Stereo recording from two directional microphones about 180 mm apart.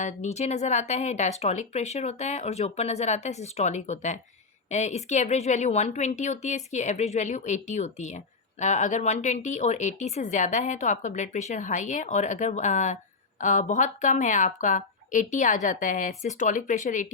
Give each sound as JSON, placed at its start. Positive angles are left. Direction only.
{"t": 0.0, "sound": "speech", "side_deg": 40}